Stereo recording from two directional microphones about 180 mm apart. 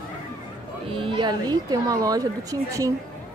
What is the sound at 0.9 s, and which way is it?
A woman's voice, 30° right (ahead or behind).